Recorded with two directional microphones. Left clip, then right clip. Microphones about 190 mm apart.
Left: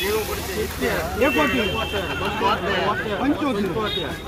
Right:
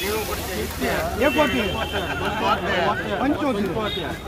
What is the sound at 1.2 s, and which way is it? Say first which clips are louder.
Speech: even; centre (ahead or behind).